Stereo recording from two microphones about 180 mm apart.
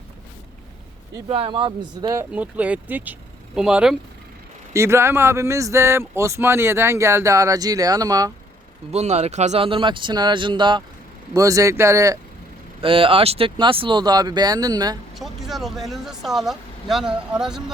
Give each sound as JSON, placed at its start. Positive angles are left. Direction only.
{"t": 1.1, "sound": "speech", "side_deg": -25}
{"t": 2.3, "sound": "speech", "side_deg": -10}
{"t": 4.7, "sound": "speech", "side_deg": -15}
{"t": 8.9, "sound": "speech", "side_deg": -35}
{"t": 12.8, "sound": "speech", "side_deg": -30}
{"t": 15.1, "sound": "speech", "side_deg": 0}